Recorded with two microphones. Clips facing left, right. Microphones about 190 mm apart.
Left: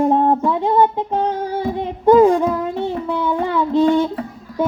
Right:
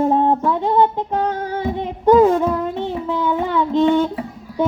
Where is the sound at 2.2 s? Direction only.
15° left (ahead or behind).